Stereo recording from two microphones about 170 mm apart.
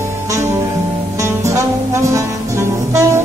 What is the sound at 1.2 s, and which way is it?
Music, 15° right (ahead or behind).